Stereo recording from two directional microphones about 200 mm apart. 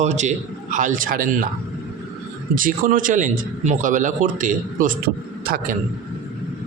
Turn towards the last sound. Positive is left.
turn(degrees=-50)  # may be behind; listen again after turning